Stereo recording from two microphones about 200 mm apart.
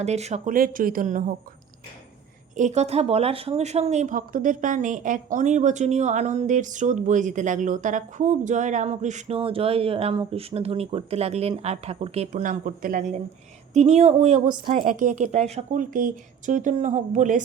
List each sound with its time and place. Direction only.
0.0 s speech: 35° right (ahead or behind)
2.6 s speech: 35° right (ahead or behind)